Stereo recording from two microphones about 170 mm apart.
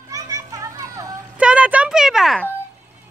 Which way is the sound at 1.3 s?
5° right (ahead or behind).